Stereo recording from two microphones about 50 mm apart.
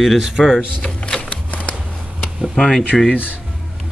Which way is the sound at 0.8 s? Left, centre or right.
Centre.